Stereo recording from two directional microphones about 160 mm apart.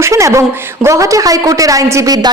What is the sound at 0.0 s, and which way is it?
Speech, 20° right (ahead or behind).